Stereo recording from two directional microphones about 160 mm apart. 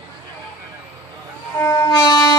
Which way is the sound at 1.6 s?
20° left (ahead or behind).